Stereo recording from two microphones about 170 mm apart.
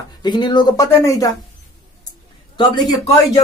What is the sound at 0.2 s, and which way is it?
Speech, 25° left (ahead or behind).